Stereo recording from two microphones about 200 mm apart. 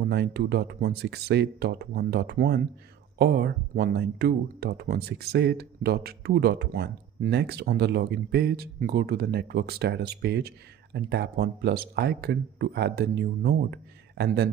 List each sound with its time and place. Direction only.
0.0 s speech: 55° right (ahead or behind)